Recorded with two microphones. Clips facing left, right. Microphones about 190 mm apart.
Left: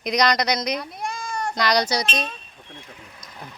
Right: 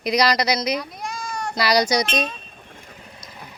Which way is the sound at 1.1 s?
55° left (ahead or behind).